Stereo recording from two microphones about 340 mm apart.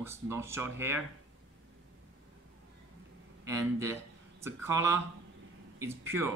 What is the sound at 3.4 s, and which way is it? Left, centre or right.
A man's voice, centre.